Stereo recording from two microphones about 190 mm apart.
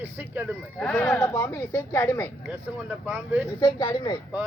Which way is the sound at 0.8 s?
5° left (ahead or behind).